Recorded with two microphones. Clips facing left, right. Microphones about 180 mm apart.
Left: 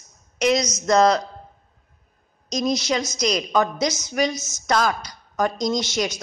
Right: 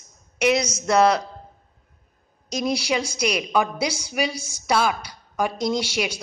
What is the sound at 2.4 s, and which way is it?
A woman's voice, 10° right (ahead or behind).